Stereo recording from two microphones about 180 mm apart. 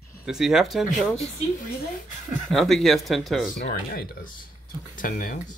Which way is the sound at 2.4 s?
Centre (ahead or behind).